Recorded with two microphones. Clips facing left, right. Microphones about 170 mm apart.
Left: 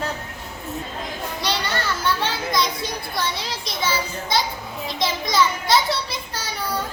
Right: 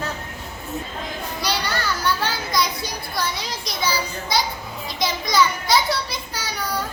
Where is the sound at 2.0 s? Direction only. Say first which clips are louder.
Even; 25° left (ahead or behind).